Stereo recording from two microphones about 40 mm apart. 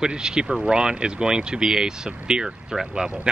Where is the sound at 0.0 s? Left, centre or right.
Centre.